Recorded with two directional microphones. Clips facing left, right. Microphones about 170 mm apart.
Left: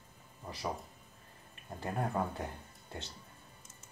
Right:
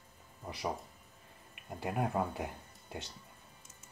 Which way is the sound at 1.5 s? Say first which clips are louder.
Right 1 dB; 15° right (ahead or behind).